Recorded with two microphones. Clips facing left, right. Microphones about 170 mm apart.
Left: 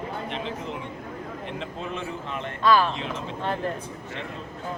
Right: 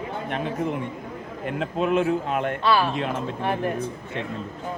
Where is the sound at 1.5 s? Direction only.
65° right (ahead or behind).